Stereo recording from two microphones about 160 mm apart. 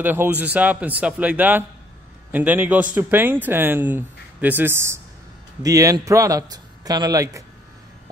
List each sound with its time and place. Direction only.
0.0 s a man's voice: 10° right (ahead or behind)